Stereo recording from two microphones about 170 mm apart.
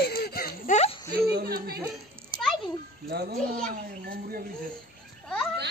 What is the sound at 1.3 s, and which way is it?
Speech, 65° right (ahead or behind).